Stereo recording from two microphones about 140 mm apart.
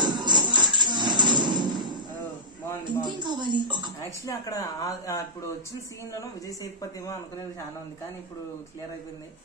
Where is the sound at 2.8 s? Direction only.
35° right (ahead or behind).